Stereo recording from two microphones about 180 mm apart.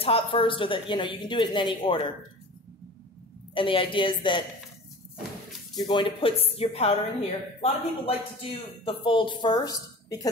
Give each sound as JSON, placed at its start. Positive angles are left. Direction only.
{"t": 0.0, "sound": "a woman's voice", "side_deg": 30}
{"t": 3.5, "sound": "a woman's voice", "side_deg": 30}
{"t": 5.8, "sound": "a woman's voice", "side_deg": 25}